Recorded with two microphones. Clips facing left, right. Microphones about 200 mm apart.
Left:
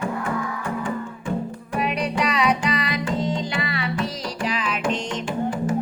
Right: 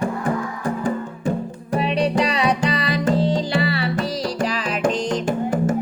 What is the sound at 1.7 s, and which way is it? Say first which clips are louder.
Music: right 5 dB; 30° right (ahead or behind).